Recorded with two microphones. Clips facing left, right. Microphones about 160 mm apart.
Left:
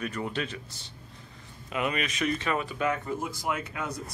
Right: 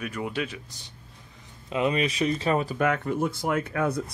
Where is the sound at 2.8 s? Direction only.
60° right (ahead or behind).